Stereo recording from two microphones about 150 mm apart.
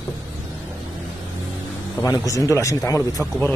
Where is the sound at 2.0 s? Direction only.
20° left (ahead or behind).